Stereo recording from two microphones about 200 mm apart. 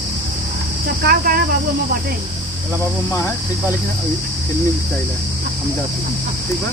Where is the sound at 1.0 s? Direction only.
50° right (ahead or behind).